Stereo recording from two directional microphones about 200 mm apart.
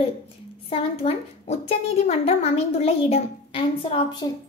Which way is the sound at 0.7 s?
30° left (ahead or behind).